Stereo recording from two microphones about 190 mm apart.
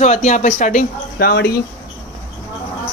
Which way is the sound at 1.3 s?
60° left (ahead or behind).